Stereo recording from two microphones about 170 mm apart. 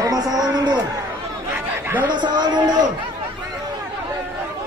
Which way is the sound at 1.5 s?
10° right (ahead or behind).